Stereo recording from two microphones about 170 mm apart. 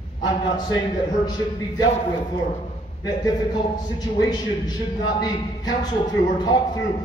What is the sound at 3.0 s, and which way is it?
A woman's voice, 25° left (ahead or behind).